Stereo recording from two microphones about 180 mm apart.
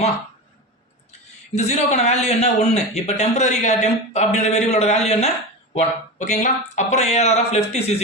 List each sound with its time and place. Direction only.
1.5 s a man's voice: 40° left (ahead or behind)